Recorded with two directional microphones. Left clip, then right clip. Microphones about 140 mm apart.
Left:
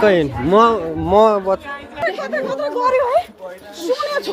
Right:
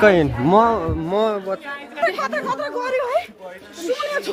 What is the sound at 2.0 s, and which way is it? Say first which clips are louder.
Speech: even; 55° right (ahead or behind).